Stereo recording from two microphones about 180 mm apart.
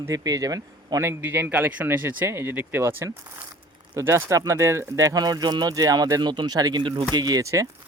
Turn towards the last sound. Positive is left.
turn(degrees=-15)  # may be behind; listen again after turning